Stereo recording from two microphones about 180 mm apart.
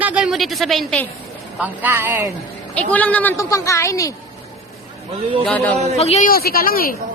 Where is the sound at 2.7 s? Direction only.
10° left (ahead or behind).